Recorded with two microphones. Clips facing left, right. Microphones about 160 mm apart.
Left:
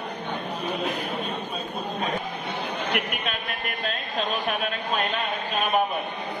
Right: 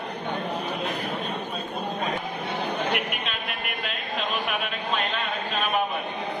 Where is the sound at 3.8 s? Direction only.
40° left (ahead or behind).